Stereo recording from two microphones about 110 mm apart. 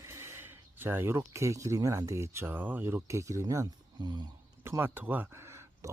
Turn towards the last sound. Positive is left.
turn(degrees=-25)  # may be behind; listen again after turning